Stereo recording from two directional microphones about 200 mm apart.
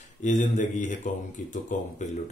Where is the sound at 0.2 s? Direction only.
40° left (ahead or behind).